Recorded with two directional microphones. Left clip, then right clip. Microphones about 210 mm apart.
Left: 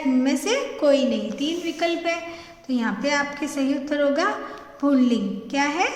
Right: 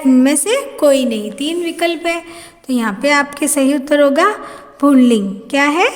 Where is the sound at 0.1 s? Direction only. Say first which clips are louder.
Right 10 dB; 55° right (ahead or behind).